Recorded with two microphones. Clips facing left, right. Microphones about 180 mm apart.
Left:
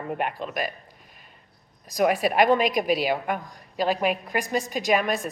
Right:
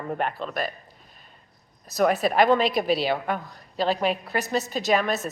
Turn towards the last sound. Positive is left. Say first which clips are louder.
# even
turn(degrees=10)  # may be behind; listen again after turning